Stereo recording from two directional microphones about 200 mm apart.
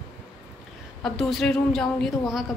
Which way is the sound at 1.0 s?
Centre (ahead or behind).